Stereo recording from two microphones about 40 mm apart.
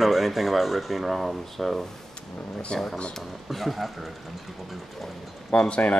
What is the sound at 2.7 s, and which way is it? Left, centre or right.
Speech, centre.